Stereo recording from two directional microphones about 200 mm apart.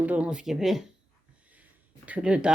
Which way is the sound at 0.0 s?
5° right (ahead or behind).